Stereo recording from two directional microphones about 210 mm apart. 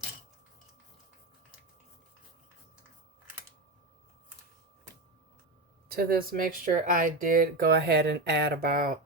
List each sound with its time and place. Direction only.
5.9 s speech: 45° right (ahead or behind)